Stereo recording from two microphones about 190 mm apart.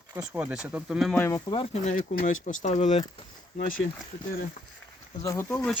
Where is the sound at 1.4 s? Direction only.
30° left (ahead or behind).